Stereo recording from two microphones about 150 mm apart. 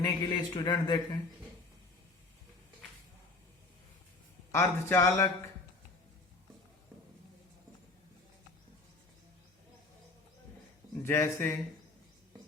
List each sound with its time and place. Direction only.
0.0 s speech: 30° left (ahead or behind)
4.5 s speech: 15° left (ahead or behind)
11.0 s speech: 15° left (ahead or behind)